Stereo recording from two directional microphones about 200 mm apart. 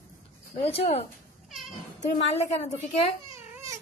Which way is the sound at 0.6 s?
30° left (ahead or behind).